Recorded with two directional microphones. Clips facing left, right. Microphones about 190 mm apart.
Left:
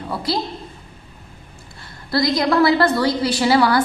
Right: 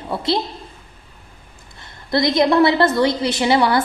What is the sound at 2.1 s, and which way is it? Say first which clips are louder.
A woman's voice: right 2 dB; 20° right (ahead or behind).